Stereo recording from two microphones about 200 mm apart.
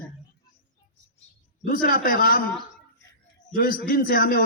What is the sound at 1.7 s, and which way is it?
Speech, 45° left (ahead or behind).